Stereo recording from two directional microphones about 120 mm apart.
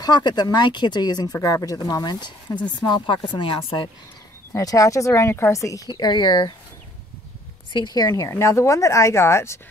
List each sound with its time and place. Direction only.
0.0 s speech: 35° left (ahead or behind)
4.5 s speech: 25° left (ahead or behind)
7.7 s speech: 35° left (ahead or behind)